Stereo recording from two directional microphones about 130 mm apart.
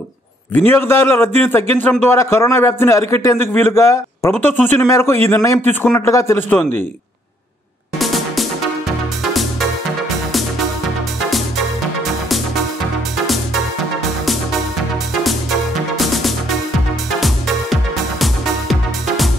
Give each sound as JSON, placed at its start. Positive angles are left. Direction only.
{"t": 0.7, "sound": "a man's voice", "side_deg": 15}
{"t": 8.0, "sound": "music", "side_deg": 0}
{"t": 11.2, "sound": "music", "side_deg": 0}
{"t": 16.0, "sound": "music", "side_deg": 0}
{"t": 18.2, "sound": "music", "side_deg": 0}